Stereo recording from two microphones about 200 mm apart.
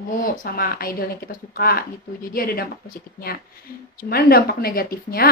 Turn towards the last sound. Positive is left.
turn(degrees=50)  # may be behind; listen again after turning